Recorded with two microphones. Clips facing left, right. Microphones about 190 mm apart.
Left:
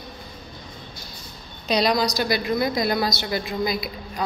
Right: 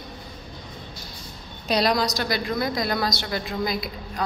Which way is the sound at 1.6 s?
Centre (ahead or behind).